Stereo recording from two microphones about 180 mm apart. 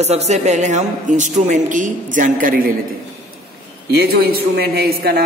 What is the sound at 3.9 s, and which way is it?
A man's voice, 60° right (ahead or behind).